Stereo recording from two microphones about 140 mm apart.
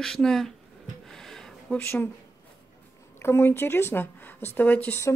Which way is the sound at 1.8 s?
15° left (ahead or behind).